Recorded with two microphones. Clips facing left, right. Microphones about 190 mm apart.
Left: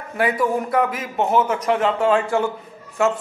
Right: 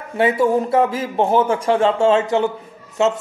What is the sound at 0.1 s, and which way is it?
A man's voice, 25° right (ahead or behind).